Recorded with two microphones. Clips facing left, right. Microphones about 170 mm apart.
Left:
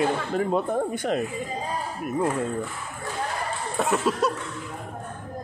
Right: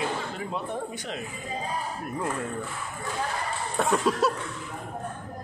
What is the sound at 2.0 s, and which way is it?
Speech, 20° left (ahead or behind).